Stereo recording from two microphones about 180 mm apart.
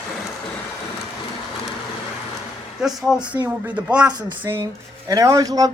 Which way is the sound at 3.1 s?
5° right (ahead or behind).